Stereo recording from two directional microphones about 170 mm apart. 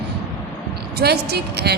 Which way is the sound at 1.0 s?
70° right (ahead or behind).